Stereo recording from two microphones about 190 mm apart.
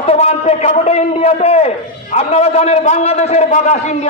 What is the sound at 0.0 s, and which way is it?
Speech, 35° left (ahead or behind).